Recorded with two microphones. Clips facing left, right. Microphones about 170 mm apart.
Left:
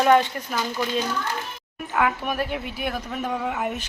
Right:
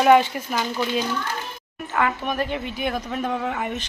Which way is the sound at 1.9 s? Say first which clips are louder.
Even; 5° left (ahead or behind).